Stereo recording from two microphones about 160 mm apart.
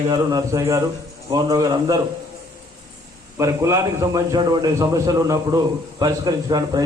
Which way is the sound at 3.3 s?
20° right (ahead or behind).